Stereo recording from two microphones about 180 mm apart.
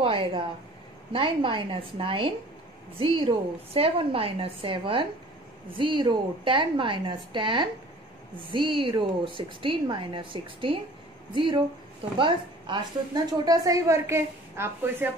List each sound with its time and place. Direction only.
0.0 s a woman's voice: 30° right (ahead or behind); by 15.1 s 10° right (ahead or behind)